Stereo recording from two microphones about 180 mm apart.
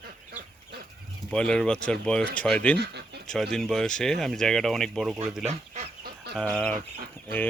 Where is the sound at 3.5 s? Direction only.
5° left (ahead or behind).